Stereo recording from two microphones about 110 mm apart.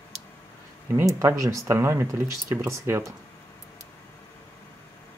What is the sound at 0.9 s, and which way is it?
Speech, 30° right (ahead or behind).